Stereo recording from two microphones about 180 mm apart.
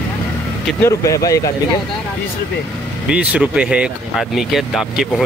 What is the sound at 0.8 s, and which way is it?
Speech, 20° left (ahead or behind).